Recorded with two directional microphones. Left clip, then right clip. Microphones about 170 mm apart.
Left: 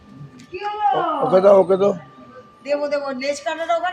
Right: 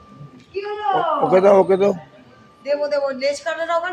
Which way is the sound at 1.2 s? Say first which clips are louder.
Left 1 dB; 15° right (ahead or behind).